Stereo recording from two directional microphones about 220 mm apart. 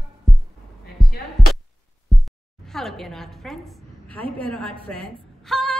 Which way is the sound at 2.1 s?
Centre (ahead or behind).